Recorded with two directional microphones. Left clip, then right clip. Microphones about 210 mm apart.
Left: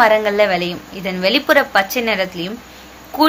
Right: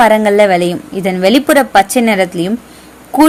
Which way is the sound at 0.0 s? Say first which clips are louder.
Right 5 dB; 45° right (ahead or behind).